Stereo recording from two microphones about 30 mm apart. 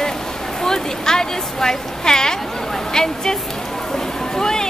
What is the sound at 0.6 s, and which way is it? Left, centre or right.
Speech, centre.